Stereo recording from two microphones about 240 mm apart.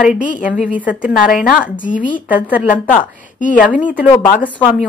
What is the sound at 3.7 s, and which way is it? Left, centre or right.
Speech, centre.